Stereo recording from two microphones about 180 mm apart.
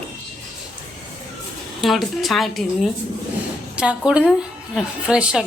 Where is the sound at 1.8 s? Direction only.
Centre (ahead or behind).